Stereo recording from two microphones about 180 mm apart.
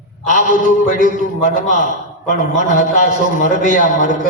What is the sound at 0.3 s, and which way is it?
A man's voice, 45° left (ahead or behind).